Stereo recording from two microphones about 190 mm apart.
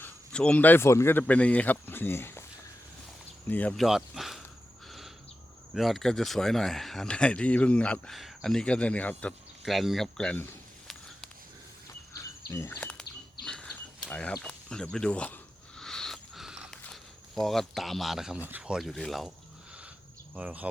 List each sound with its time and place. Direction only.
0.0 s speech: 5° left (ahead or behind)
3.5 s speech: 5° left (ahead or behind)
4.9 s bird: centre (ahead or behind)
5.7 s speech: centre (ahead or behind)
12.1 s insect: 15° left (ahead or behind)
13.4 s a sound: 5° left (ahead or behind)
17.4 s speech: centre (ahead or behind)
20.3 s insect: 10° right (ahead or behind)